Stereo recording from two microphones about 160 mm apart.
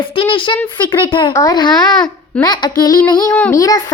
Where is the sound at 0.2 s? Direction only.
30° left (ahead or behind).